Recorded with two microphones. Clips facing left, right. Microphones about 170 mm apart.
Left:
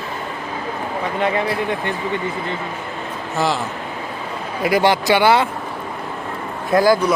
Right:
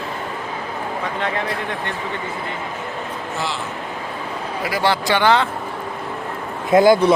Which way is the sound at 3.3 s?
40° left (ahead or behind).